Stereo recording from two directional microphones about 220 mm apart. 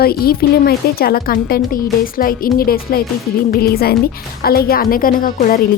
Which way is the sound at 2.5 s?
45° left (ahead or behind).